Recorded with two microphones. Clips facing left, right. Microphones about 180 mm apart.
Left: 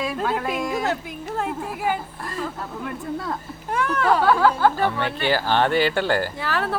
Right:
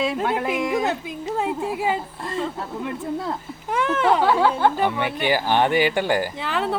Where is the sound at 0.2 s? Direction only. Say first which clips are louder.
Right 2 dB; 15° right (ahead or behind).